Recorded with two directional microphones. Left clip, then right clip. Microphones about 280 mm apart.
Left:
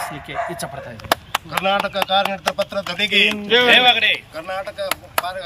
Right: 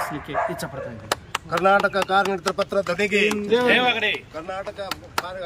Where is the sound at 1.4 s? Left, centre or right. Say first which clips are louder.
Right 2 dB; right.